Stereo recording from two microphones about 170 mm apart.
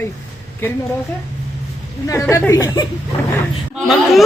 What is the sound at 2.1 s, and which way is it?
Speech, 15° left (ahead or behind).